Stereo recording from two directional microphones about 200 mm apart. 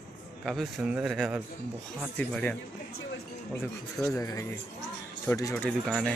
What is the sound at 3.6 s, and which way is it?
A man's voice, 15° left (ahead or behind).